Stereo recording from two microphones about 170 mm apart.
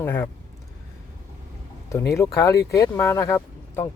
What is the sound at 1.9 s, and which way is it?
Speech, 15° left (ahead or behind).